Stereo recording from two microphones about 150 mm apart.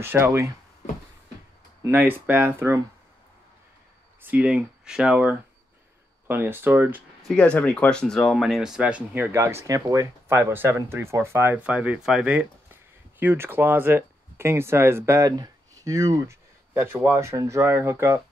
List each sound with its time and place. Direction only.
0.0 s speech: 15° right (ahead or behind)
1.8 s speech: 15° right (ahead or behind)
4.2 s speech: 10° right (ahead or behind)
7.2 s speech: 5° left (ahead or behind); by 18.2 s 15° right (ahead or behind)